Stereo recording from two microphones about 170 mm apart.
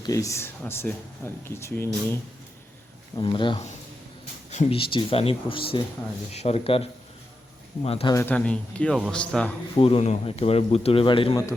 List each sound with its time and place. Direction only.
0.0 s speech: 20° left (ahead or behind)
3.2 s a man's voice: 30° left (ahead or behind)
7.9 s a man's voice: 35° left (ahead or behind)
8.1 s speech: 10° left (ahead or behind)
9.7 s a man's voice: 35° left (ahead or behind)